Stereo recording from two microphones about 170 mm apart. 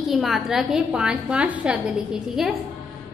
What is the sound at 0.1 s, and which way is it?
A woman's voice, centre (ahead or behind).